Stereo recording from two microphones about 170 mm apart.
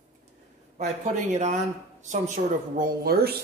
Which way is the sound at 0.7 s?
45° right (ahead or behind).